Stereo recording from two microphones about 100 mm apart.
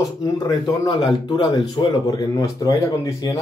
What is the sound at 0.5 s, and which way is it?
Speech, 45° left (ahead or behind).